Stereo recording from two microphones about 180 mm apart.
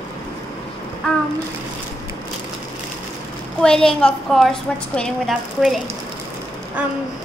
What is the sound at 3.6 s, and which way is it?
A woman's voice, 5° left (ahead or behind).